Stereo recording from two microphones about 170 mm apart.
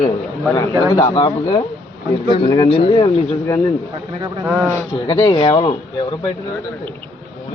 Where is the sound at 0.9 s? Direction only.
25° left (ahead or behind).